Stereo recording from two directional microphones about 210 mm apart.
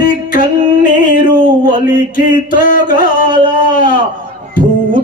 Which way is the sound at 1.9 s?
40° left (ahead or behind).